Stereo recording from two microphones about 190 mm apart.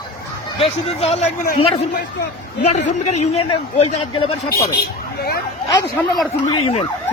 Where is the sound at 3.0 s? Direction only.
35° left (ahead or behind).